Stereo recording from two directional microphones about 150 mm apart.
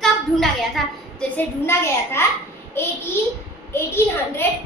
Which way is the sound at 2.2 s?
15° left (ahead or behind).